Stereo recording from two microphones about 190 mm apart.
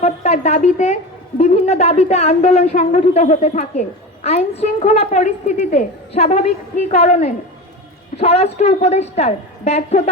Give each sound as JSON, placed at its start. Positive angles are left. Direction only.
{"t": 0.0, "sound": "a woman's voice", "side_deg": 35}